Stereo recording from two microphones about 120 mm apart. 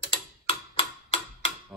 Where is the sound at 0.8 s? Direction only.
55° left (ahead or behind).